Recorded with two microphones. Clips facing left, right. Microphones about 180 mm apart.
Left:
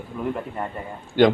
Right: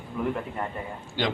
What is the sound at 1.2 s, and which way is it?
Speech, 55° left (ahead or behind).